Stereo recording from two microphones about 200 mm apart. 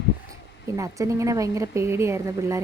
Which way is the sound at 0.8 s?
15° right (ahead or behind).